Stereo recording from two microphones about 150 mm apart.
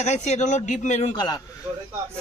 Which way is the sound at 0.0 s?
50° left (ahead or behind).